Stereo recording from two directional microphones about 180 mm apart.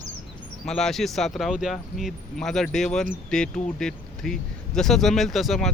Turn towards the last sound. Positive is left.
turn(degrees=0)  # may be behind; listen again after turning